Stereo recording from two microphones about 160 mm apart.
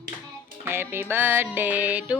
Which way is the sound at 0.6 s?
15° right (ahead or behind).